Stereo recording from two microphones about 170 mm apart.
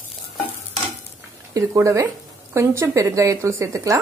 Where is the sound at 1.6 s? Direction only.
20° right (ahead or behind).